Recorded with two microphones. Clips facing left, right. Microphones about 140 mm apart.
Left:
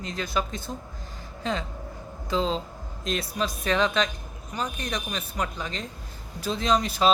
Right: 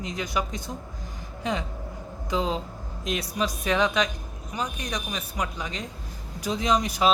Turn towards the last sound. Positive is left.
turn(degrees=-15)  # may be behind; listen again after turning